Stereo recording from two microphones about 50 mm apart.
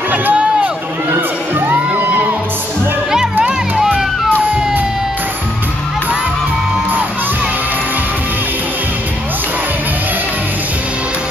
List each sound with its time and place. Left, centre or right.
0.1 s run: right
1.1 s music: right